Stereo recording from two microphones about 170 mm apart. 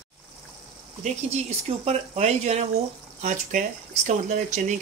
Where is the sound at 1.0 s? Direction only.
40° right (ahead or behind).